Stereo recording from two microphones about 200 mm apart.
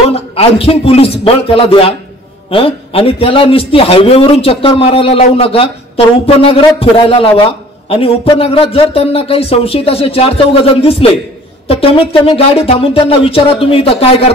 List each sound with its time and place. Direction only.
0.1 s a man's voice: 30° left (ahead or behind)